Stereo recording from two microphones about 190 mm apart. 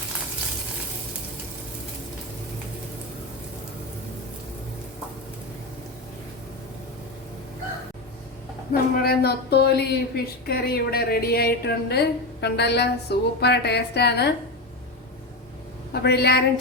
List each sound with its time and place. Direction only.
8.7 s a woman's voice: 55° left (ahead or behind)
15.9 s a woman's voice: 60° left (ahead or behind)